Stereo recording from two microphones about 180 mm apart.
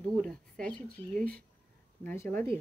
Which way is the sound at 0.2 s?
5° left (ahead or behind).